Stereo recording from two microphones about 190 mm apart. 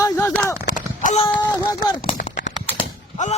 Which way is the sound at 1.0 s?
40° left (ahead or behind).